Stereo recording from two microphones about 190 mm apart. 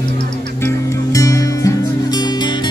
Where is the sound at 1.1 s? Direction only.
15° left (ahead or behind).